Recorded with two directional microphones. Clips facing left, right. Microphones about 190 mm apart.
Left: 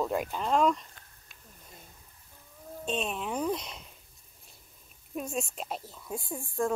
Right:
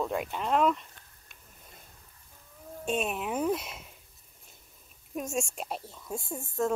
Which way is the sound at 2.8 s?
5° right (ahead or behind).